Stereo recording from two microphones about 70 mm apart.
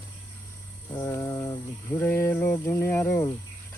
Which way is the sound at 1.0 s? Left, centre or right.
Left.